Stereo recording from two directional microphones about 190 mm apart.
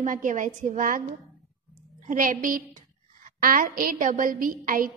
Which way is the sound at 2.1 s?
45° right (ahead or behind).